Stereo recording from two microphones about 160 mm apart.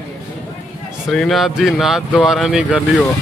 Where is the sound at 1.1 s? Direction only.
Centre (ahead or behind).